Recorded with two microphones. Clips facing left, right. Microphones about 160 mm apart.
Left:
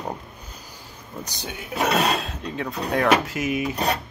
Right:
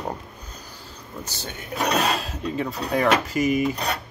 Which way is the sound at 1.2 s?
15° left (ahead or behind).